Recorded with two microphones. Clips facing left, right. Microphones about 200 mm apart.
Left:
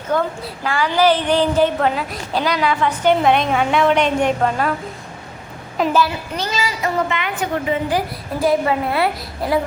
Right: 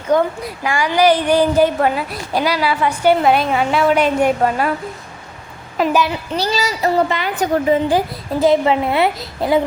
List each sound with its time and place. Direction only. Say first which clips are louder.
0.1 s a woman's voice: right 4 dB; 15° right (ahead or behind)
5.9 s a woman's voice: even; 20° right (ahead or behind)
6.3 s a woman's voice: right 4 dB; 35° right (ahead or behind)